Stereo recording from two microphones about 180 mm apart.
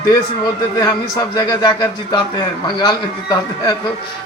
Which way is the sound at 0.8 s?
20° left (ahead or behind).